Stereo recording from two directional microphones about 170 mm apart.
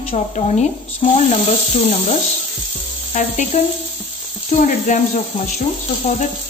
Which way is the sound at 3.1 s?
40° left (ahead or behind).